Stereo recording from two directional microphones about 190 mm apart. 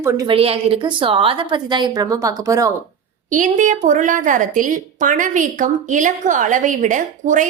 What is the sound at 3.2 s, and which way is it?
A woman's voice, 45° right (ahead or behind).